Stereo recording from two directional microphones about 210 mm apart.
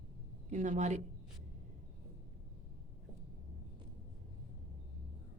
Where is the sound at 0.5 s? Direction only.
35° right (ahead or behind).